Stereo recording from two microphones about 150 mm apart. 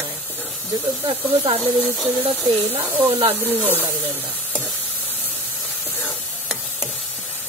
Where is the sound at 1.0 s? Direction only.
40° right (ahead or behind).